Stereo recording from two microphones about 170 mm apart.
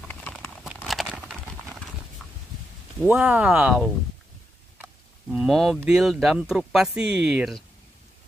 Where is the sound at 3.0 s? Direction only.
10° right (ahead or behind).